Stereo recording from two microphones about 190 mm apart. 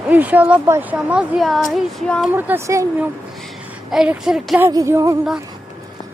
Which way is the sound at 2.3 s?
15° right (ahead or behind).